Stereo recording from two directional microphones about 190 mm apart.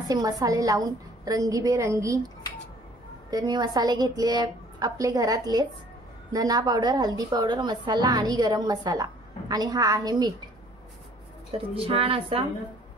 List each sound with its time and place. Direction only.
0.1 s a woman's voice: 20° right (ahead or behind)
3.3 s a woman's voice: 20° right (ahead or behind)
11.5 s a woman's voice: 30° right (ahead or behind)